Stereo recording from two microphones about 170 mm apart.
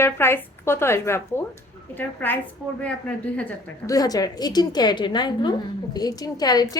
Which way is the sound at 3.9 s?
20° left (ahead or behind).